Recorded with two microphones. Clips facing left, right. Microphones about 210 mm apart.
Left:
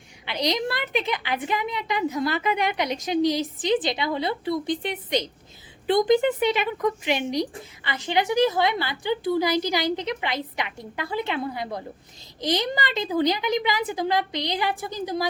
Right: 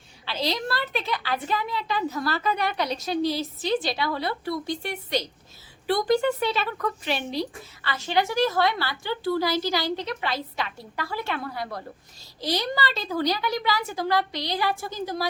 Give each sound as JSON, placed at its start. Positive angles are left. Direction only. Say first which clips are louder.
{"t": 0.3, "sound": "a woman's voice", "louder": "left 2 dB", "side_deg": 20}